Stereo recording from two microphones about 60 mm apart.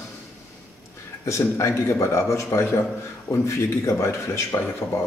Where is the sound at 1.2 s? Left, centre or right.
Left.